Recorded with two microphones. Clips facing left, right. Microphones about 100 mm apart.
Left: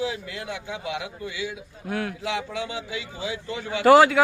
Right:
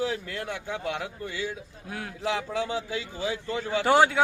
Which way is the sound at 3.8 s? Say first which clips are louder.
Left 7 dB; 90° left.